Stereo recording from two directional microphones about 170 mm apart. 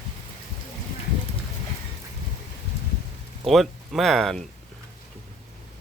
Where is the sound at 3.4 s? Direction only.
Centre (ahead or behind).